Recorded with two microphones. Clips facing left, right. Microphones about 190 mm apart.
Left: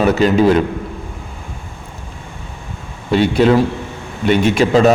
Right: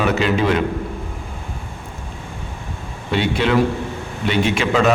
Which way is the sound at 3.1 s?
40° left (ahead or behind).